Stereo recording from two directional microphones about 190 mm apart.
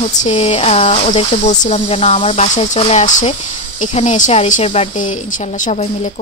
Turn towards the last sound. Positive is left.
turn(degrees=35)  # may be behind; listen again after turning